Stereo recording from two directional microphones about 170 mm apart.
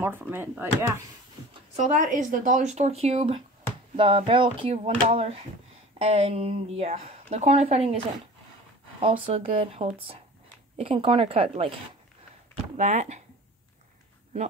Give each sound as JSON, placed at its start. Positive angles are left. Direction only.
{"t": 0.0, "sound": "speech", "side_deg": -10}
{"t": 2.0, "sound": "a woman's voice", "side_deg": -50}
{"t": 9.0, "sound": "a woman's voice", "side_deg": -35}
{"t": 12.7, "sound": "speech", "side_deg": -45}